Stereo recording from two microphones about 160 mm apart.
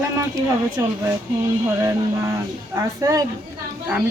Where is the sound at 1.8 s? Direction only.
20° right (ahead or behind).